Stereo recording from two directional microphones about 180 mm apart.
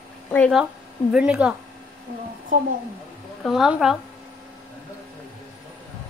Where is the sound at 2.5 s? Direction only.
45° right (ahead or behind).